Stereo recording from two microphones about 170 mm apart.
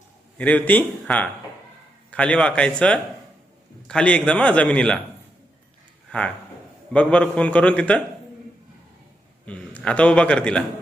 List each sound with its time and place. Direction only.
0.3 s a man's voice: 10° left (ahead or behind)
6.1 s a man's voice: 5° left (ahead or behind)
9.5 s a man's voice: 5° left (ahead or behind)